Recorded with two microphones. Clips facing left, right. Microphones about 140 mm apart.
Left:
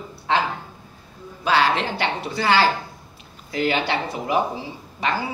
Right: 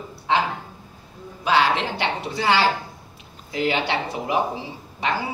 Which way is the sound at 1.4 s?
20° right (ahead or behind).